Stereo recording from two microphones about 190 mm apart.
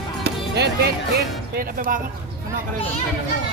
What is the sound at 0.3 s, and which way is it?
Music, 60° right (ahead or behind).